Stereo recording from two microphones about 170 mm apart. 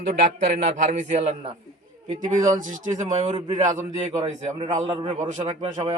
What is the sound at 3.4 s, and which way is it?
A man's voice, 30° right (ahead or behind).